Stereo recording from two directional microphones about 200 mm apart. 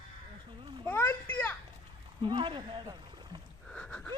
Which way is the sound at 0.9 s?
10° left (ahead or behind).